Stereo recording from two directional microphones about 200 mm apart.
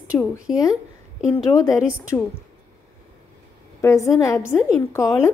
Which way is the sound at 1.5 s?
15° left (ahead or behind).